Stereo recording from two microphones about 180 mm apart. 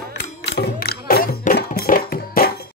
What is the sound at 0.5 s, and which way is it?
Music, 60° left (ahead or behind).